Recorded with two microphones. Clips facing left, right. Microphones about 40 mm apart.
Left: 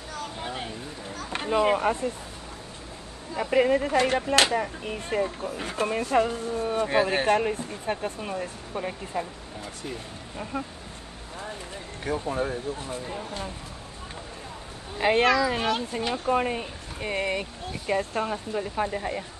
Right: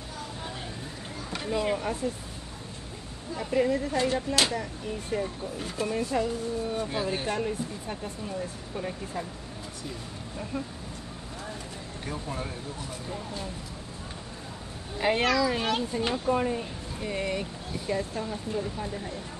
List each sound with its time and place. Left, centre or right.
0.4 s a sound: left
1.3 s speech: left
3.3 s speech: left
8.7 s speech: left
10.5 s speech: left
12.1 s speech: left
15.0 s speech: left